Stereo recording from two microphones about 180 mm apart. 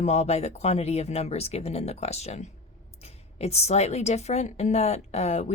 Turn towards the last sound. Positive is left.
turn(degrees=35)  # may be behind; listen again after turning